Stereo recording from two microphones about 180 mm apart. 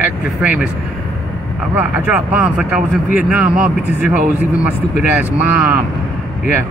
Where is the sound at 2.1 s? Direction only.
5° right (ahead or behind).